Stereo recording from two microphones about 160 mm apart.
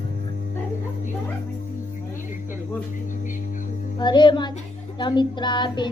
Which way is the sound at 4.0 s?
30° left (ahead or behind).